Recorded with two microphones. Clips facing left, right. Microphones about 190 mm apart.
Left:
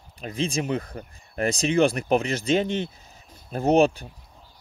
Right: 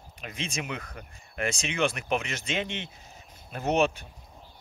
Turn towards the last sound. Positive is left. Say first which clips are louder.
# left 6 dB
turn(degrees=35)  # may be behind; listen again after turning